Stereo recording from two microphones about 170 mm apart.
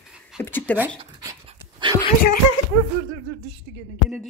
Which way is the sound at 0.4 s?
10° left (ahead or behind).